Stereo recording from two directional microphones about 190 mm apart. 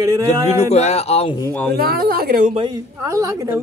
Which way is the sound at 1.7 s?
55° right (ahead or behind).